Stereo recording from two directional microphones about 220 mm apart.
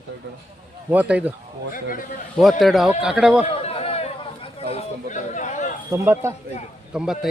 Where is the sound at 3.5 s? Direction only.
25° left (ahead or behind).